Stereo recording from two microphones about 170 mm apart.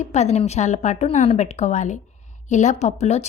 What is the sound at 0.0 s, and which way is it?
A woman's voice, 40° left (ahead or behind).